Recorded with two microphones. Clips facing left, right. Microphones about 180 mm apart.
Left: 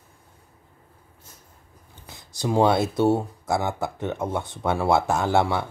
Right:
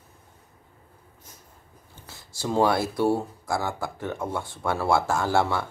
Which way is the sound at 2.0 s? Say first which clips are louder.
Left 3 dB; 20° left (ahead or behind).